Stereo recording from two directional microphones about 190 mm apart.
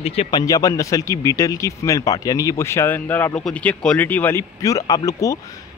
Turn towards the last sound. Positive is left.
turn(degrees=20)  # may be behind; listen again after turning